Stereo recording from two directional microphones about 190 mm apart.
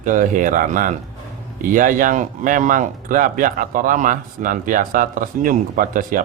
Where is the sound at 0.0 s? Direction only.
45° right (ahead or behind).